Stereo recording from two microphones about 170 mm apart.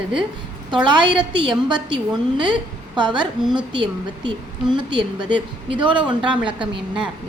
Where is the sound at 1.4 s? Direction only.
30° right (ahead or behind).